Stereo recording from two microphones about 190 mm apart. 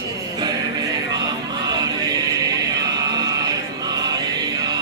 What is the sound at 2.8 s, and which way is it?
Chant, 20° right (ahead or behind).